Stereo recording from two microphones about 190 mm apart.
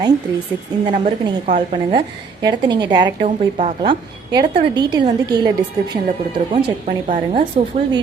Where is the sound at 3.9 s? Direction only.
25° right (ahead or behind).